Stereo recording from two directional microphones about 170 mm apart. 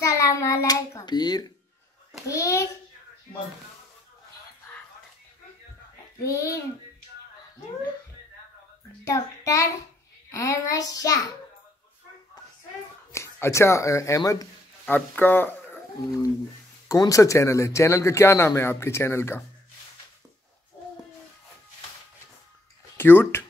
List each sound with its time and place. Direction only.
0.0 s hands: 20° left (ahead or behind)
2.2 s a sound: 20° left (ahead or behind)
6.2 s a man's voice: 15° left (ahead or behind)
9.0 s a child's voice: 20° left (ahead or behind)
13.1 s a man's voice: 15° left (ahead or behind)
22.9 s speech: 15° left (ahead or behind)